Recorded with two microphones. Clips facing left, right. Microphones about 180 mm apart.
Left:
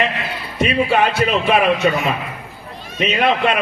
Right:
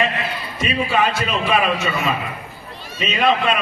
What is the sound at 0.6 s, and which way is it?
A man's voice, 60° left (ahead or behind).